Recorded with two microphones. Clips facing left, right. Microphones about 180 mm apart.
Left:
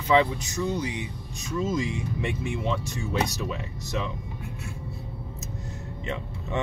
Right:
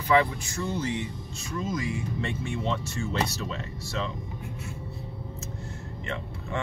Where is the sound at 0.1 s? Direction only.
20° left (ahead or behind).